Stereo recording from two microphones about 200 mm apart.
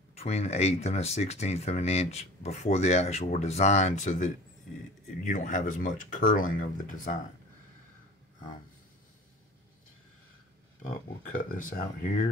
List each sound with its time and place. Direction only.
0.1 s speech: 30° left (ahead or behind)
10.8 s speech: 40° left (ahead or behind)